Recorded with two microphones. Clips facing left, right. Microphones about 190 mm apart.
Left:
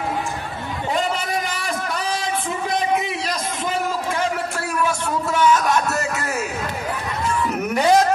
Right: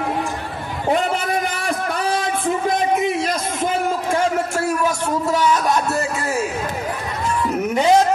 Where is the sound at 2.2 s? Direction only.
50° right (ahead or behind).